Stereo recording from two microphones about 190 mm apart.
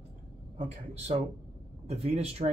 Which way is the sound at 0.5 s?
40° right (ahead or behind).